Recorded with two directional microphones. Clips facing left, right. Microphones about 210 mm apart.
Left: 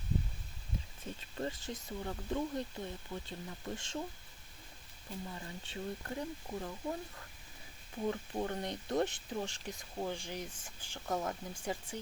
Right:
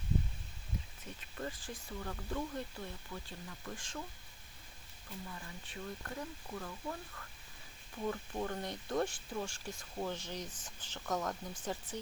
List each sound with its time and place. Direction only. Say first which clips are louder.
1.4 s speech: left 3 dB; 25° left (ahead or behind)
5.3 s speech: left 3 dB; 30° left (ahead or behind); by 11.9 s 10° left (ahead or behind)